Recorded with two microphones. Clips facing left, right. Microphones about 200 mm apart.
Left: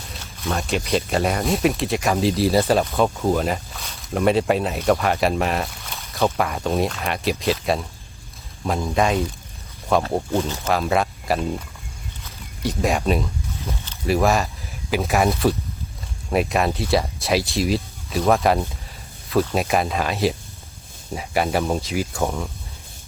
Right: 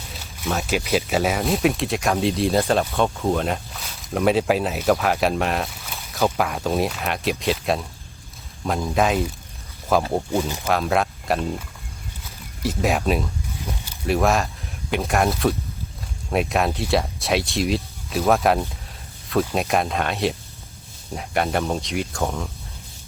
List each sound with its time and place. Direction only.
0.1 s speech: centre (ahead or behind)
10.3 s speech: 10° right (ahead or behind)
10.7 s speech: centre (ahead or behind)
12.6 s speech: centre (ahead or behind)